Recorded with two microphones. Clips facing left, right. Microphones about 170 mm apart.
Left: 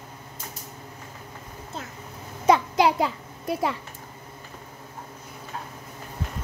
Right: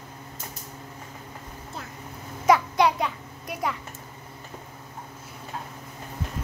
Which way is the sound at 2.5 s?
25° left (ahead or behind).